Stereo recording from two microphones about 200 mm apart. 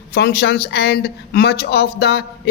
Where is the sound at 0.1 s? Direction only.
50° left (ahead or behind).